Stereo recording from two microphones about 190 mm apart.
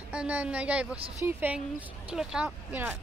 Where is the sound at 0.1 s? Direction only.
5° right (ahead or behind).